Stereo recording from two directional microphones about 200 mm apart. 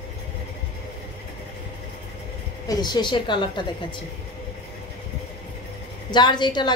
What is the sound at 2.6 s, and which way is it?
Speech, 20° left (ahead or behind).